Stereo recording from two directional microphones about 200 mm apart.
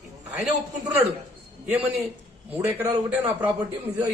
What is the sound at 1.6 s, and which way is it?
A man's voice, 5° right (ahead or behind).